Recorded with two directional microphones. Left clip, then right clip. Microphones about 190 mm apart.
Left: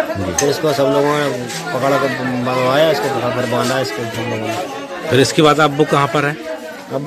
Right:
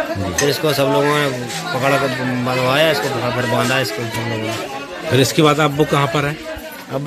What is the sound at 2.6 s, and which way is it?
Speech, 10° right (ahead or behind).